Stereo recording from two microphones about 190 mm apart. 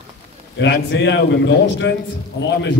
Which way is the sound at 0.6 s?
70° left (ahead or behind).